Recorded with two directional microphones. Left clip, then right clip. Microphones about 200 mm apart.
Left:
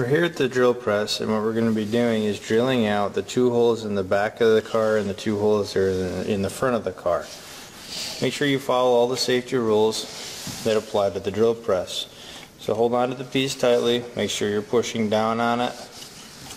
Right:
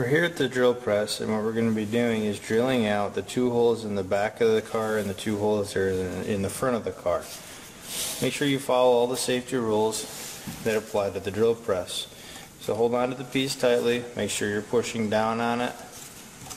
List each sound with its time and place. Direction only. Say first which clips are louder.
0.0 s speech: left 2 dB; 15° left (ahead or behind)
8.3 s speech: left 3 dB; 20° left (ahead or behind)